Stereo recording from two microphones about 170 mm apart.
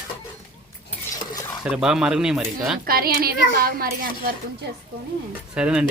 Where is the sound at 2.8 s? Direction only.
60° right (ahead or behind).